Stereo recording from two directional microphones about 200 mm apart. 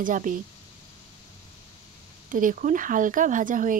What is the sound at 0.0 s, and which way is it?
Speech, 40° right (ahead or behind).